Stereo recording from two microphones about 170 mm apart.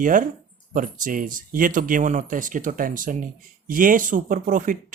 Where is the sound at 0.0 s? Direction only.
50° right (ahead or behind).